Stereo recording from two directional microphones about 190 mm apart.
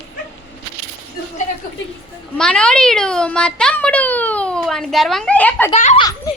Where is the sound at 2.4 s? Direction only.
5° left (ahead or behind).